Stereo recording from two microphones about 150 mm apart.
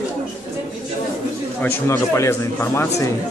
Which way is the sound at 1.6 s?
20° left (ahead or behind).